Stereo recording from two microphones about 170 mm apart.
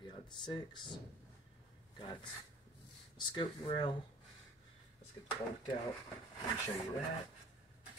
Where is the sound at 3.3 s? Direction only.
30° left (ahead or behind).